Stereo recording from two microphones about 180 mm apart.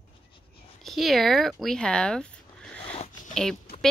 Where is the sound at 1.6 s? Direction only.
5° left (ahead or behind).